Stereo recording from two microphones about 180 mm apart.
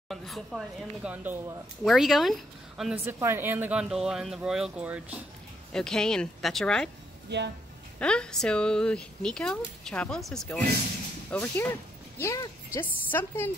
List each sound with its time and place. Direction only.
0.1 s speech: centre (ahead or behind)
5.7 s speech: 5° left (ahead or behind)
7.2 s speech: 70° right (ahead or behind)
8.0 s speech: 5° left (ahead or behind)